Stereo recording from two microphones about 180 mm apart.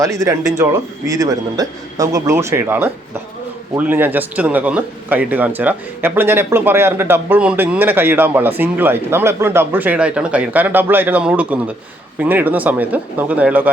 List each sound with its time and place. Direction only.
0.0 s speech: 20° right (ahead or behind)